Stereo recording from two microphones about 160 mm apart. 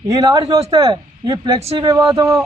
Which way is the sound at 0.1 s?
20° right (ahead or behind).